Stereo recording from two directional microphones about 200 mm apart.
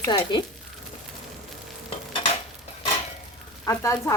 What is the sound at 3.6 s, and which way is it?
Speech, 15° left (ahead or behind).